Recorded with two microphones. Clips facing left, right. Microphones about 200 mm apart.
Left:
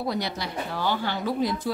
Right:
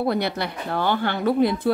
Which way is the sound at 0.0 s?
60° right (ahead or behind).